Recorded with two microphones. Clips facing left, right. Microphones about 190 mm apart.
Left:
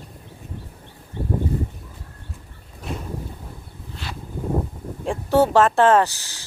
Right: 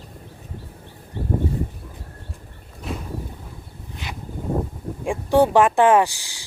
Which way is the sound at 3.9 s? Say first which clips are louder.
Even; 15° right (ahead or behind).